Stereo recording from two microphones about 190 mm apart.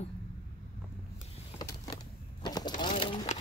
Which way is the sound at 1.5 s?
20° left (ahead or behind).